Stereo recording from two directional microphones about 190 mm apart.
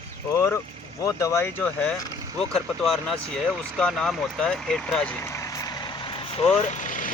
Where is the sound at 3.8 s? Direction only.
5° left (ahead or behind).